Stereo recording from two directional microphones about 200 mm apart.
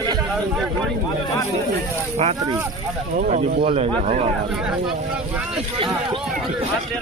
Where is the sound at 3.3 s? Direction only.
30° right (ahead or behind).